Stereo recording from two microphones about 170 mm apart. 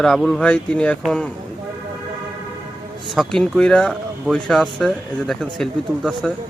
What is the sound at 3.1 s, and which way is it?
Speech, centre (ahead or behind).